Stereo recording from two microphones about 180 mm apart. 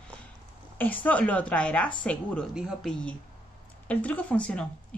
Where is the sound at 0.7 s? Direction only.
10° left (ahead or behind).